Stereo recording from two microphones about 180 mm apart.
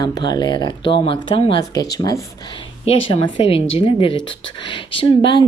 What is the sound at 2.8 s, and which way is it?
Speech, 30° left (ahead or behind).